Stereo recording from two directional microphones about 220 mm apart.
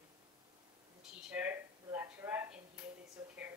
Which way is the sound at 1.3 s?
10° right (ahead or behind).